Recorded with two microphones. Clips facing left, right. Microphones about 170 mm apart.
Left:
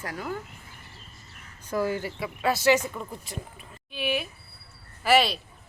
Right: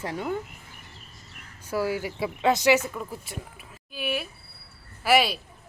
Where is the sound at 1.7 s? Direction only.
10° right (ahead or behind).